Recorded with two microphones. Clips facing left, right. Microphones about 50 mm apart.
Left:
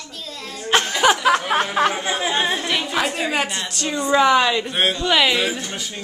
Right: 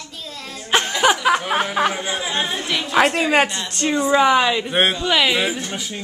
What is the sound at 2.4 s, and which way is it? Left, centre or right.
Speech, left.